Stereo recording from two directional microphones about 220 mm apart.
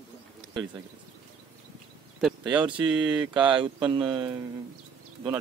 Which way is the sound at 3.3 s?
20° right (ahead or behind).